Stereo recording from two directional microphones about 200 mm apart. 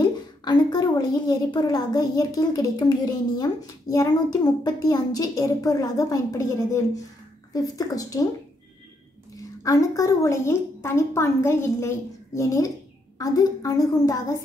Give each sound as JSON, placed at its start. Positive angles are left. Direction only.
{"t": 0.0, "sound": "a woman's voice", "side_deg": 20}
{"t": 9.4, "sound": "a woman's voice", "side_deg": 15}